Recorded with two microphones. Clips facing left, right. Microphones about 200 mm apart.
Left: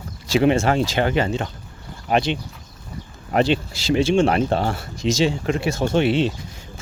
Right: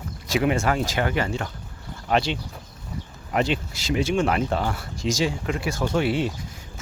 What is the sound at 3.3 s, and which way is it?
Speech, 30° left (ahead or behind).